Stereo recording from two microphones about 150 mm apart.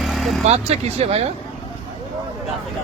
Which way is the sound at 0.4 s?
45° right (ahead or behind).